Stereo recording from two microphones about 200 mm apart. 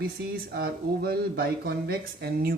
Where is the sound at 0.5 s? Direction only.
50° right (ahead or behind).